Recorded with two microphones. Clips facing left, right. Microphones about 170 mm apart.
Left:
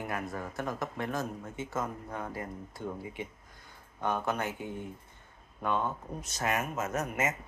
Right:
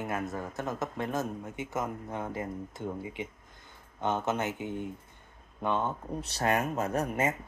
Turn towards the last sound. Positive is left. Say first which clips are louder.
# right 3 dB
turn(degrees=-30)  # may be behind; listen again after turning